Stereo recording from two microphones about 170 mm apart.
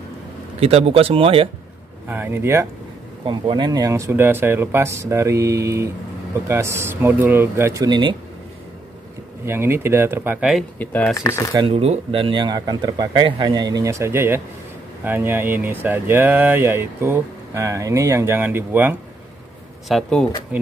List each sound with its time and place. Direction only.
0.6 s speech: 35° right (ahead or behind)
2.0 s speech: 10° right (ahead or behind)
3.3 s speech: 30° right (ahead or behind)
9.5 s speech: 15° right (ahead or behind)
10.8 s speech: 10° left (ahead or behind)
11.1 s speech: 20° left (ahead or behind)
11.5 s speech: 30° right (ahead or behind); by 18.9 s 10° right (ahead or behind)
19.9 s speech: 5° left (ahead or behind)
20.5 s speech: 10° right (ahead or behind)